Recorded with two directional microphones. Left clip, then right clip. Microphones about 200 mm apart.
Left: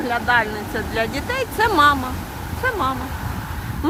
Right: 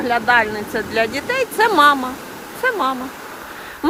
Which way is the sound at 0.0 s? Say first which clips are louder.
Right 3 dB; 15° right (ahead or behind).